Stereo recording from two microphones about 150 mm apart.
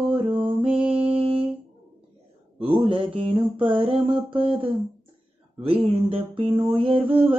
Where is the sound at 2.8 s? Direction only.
35° right (ahead or behind).